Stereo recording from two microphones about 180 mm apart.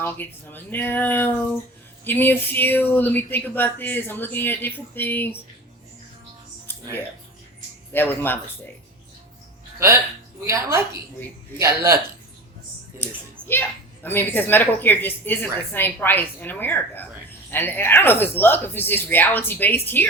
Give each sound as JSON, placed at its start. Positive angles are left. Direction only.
{"t": 0.0, "sound": "speech", "side_deg": 10}
{"t": 7.9, "sound": "speech", "side_deg": 10}
{"t": 10.4, "sound": "a woman's voice", "side_deg": -15}
{"t": 13.5, "sound": "speech", "side_deg": 10}